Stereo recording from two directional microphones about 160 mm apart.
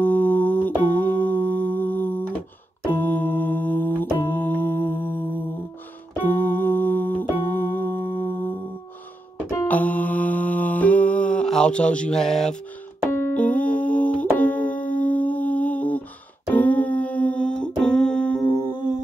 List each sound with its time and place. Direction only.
0.0 s music: 10° left (ahead or behind)
7.9 s music: 30° left (ahead or behind)
9.5 s mantra: 15° left (ahead or behind)
13.1 s music: 15° left (ahead or behind)